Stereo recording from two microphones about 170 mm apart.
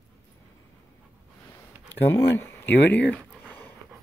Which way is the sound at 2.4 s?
10° left (ahead or behind).